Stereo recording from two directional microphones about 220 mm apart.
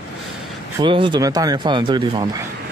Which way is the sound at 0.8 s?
20° right (ahead or behind).